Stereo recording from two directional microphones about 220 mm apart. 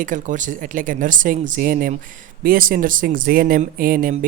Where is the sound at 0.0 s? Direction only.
35° right (ahead or behind).